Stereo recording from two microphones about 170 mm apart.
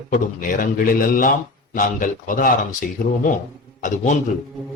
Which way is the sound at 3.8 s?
45° left (ahead or behind).